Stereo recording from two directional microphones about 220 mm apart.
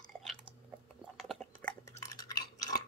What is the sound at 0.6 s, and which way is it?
Chewing, centre (ahead or behind).